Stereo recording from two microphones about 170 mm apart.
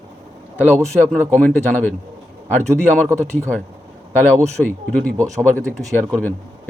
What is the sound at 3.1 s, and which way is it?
Speech, 15° right (ahead or behind).